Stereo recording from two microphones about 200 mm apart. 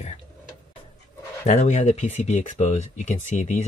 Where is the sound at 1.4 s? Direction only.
35° left (ahead or behind).